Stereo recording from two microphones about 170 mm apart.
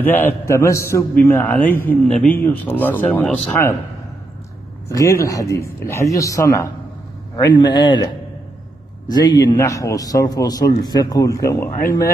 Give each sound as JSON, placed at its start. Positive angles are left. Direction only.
{"t": 0.0, "sound": "speech", "side_deg": 10}
{"t": 4.8, "sound": "a man's voice", "side_deg": 15}
{"t": 9.4, "sound": "a man's voice", "side_deg": 20}